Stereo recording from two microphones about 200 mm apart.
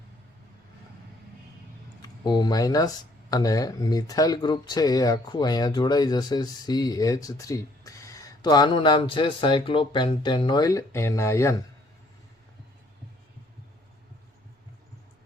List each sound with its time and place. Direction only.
2.0 s speech: 20° left (ahead or behind)